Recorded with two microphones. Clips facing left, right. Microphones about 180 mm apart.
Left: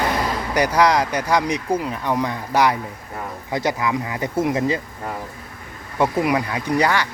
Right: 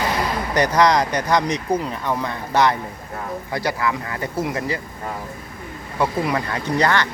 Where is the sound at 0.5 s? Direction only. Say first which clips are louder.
Even; 10° left (ahead or behind).